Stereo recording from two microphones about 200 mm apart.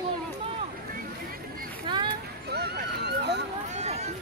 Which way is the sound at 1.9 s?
25° right (ahead or behind).